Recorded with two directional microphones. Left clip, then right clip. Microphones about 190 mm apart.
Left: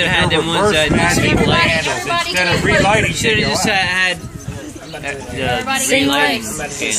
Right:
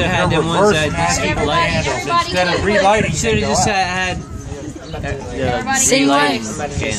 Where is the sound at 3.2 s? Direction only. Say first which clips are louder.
Left 1 dB; 55° right (ahead or behind).